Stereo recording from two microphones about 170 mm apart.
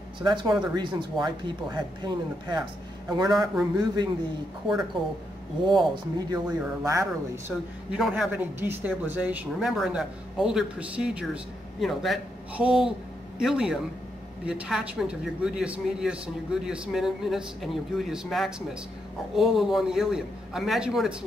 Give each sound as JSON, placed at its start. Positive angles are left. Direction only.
{"t": 0.2, "sound": "speech", "side_deg": -25}
{"t": 7.9, "sound": "speech", "side_deg": -5}